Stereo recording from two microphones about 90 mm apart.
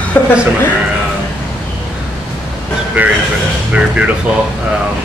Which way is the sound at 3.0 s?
15° right (ahead or behind).